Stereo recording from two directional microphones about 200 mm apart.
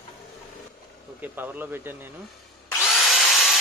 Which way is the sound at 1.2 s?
10° right (ahead or behind).